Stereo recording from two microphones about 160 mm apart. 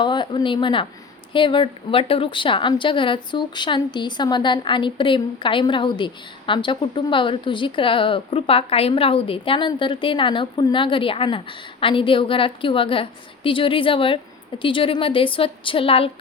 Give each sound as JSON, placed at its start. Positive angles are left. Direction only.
{"t": 0.0, "sound": "a woman's voice", "side_deg": 30}